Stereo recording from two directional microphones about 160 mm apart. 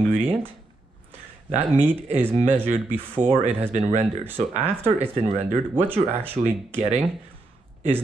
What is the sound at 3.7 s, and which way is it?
Speech, 45° right (ahead or behind).